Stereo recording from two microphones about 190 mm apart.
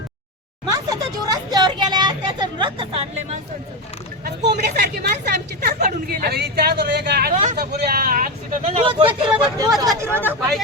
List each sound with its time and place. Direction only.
0.6 s a sound: 20° right (ahead or behind)
4.2 s speech: 55° right (ahead or behind)
8.6 s speech: 30° right (ahead or behind)
10.2 s speech: 10° left (ahead or behind)